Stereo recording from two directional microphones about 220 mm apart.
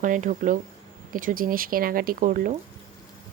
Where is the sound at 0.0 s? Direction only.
35° right (ahead or behind).